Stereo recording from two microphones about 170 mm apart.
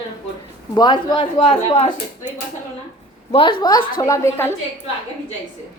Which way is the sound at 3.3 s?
30° left (ahead or behind).